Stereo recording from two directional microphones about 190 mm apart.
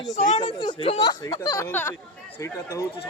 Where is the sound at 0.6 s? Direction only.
25° left (ahead or behind).